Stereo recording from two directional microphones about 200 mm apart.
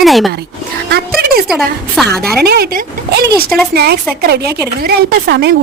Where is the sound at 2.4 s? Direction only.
50° right (ahead or behind).